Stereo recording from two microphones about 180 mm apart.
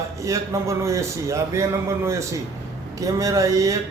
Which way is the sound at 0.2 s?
15° right (ahead or behind).